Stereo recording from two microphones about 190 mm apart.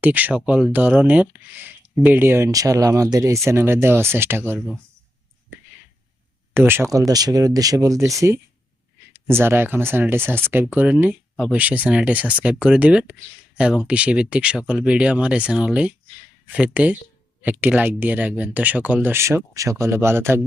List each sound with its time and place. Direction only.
0.0 s speech: 10° right (ahead or behind)
6.5 s speech: 10° right (ahead or behind)